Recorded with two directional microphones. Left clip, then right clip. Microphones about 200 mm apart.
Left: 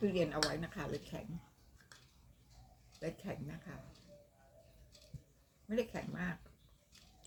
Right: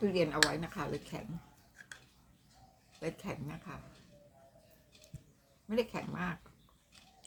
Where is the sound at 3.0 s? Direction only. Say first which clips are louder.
Right 3 dB; 15° right (ahead or behind).